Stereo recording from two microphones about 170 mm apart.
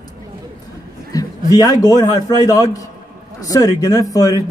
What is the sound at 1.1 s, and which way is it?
A man's voice, 20° left (ahead or behind).